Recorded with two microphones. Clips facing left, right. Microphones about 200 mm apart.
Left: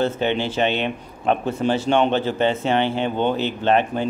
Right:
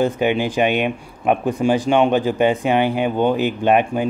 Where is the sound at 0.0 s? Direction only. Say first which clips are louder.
Right 3 dB; 10° right (ahead or behind).